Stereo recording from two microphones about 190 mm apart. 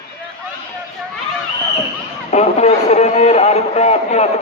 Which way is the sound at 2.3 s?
35° left (ahead or behind).